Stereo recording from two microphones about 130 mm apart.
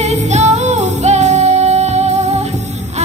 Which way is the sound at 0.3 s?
60° right (ahead or behind).